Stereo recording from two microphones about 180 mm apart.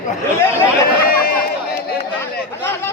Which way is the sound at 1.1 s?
55° left (ahead or behind).